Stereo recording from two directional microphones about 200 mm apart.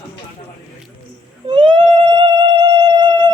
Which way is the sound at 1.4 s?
25° right (ahead or behind).